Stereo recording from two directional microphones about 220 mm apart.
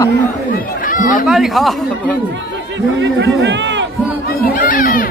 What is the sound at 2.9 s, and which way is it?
Speech, 55° right (ahead or behind).